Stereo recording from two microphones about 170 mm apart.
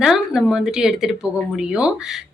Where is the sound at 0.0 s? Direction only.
Centre (ahead or behind).